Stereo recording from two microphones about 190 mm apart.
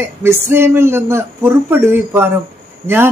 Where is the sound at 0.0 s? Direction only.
15° right (ahead or behind).